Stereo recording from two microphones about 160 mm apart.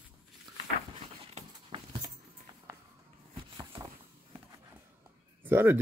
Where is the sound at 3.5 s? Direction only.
30° right (ahead or behind).